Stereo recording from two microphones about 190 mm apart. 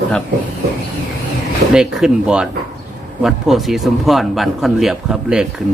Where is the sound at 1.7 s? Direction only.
Centre (ahead or behind).